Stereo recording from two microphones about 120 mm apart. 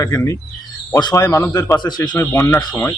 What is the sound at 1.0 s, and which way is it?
Speech, 35° left (ahead or behind).